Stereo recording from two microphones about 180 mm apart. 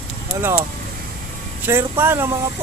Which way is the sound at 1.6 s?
10° right (ahead or behind).